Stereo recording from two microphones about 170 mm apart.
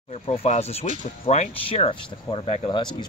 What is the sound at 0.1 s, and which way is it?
Speech, 35° left (ahead or behind).